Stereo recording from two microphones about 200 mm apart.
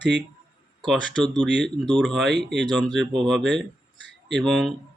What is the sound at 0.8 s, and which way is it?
Speech, centre (ahead or behind).